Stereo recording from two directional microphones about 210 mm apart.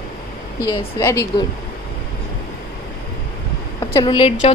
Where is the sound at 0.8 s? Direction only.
15° left (ahead or behind).